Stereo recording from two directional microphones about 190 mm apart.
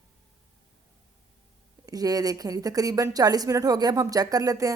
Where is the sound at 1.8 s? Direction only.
20° right (ahead or behind).